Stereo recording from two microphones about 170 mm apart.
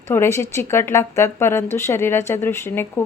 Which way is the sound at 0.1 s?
15° left (ahead or behind).